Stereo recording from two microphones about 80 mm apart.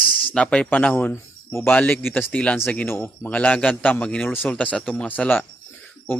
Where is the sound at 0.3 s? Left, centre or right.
Centre.